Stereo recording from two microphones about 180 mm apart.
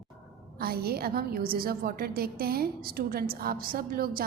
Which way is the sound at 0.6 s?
60° right (ahead or behind).